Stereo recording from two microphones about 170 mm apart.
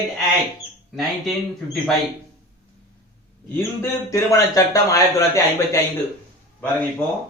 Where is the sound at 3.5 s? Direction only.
10° left (ahead or behind).